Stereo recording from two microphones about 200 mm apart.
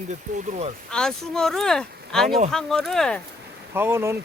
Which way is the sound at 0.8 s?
5° left (ahead or behind).